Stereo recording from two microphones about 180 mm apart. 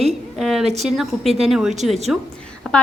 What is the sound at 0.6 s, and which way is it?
Speech, 35° right (ahead or behind).